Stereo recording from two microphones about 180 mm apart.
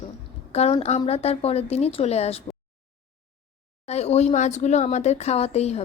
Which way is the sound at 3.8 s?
35° left (ahead or behind).